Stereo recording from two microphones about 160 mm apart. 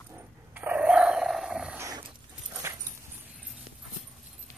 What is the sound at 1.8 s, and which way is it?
Dog, 20° right (ahead or behind).